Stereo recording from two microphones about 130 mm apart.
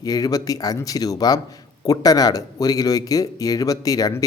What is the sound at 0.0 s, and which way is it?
Speech, 30° left (ahead or behind).